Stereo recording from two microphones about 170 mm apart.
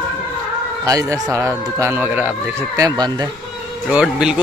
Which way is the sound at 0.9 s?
20° right (ahead or behind).